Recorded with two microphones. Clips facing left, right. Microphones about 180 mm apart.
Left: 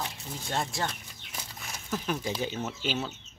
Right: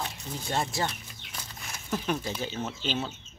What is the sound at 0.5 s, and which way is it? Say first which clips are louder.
Speech: right 2 dB; centre (ahead or behind).